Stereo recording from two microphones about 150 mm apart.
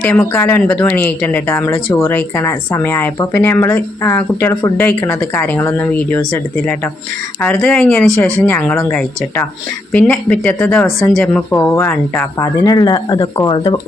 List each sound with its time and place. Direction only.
0.0 s speech: 10° left (ahead or behind); by 13.7 s 25° left (ahead or behind)